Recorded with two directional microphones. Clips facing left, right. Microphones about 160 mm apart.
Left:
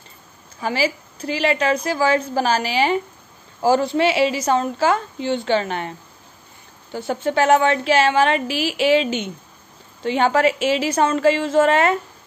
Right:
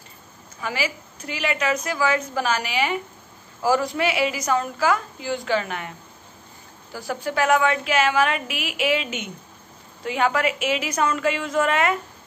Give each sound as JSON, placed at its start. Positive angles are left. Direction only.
{"t": 0.6, "sound": "a woman's voice", "side_deg": 30}